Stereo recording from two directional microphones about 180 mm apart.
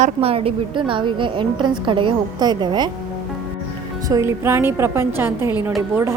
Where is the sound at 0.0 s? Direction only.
35° right (ahead or behind).